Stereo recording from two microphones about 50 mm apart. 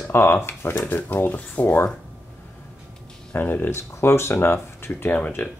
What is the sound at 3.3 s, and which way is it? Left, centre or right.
Speech, left.